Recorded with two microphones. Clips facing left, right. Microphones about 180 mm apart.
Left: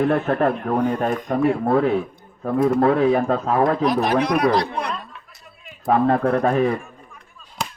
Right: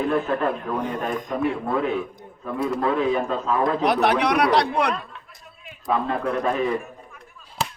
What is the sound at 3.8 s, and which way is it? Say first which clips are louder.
Speech: left 1 dB; 75° right (ahead or behind).